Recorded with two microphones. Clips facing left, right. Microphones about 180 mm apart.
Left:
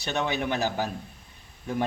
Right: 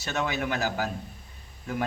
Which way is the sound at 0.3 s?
20° left (ahead or behind).